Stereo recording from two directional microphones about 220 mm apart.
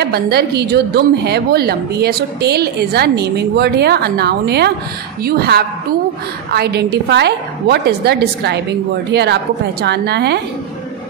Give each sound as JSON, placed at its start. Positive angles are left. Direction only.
{"t": 0.0, "sound": "a woman's voice", "side_deg": -45}